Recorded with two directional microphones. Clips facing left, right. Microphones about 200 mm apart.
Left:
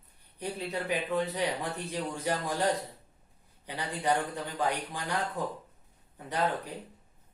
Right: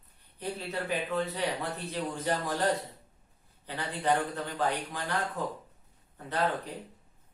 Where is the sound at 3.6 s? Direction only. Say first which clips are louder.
Right 1 dB; 15° left (ahead or behind).